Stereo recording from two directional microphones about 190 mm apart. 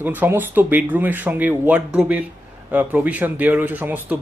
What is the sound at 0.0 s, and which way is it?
Speech, 10° right (ahead or behind).